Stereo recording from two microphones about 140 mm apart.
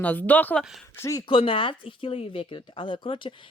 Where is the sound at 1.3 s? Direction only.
40° left (ahead or behind).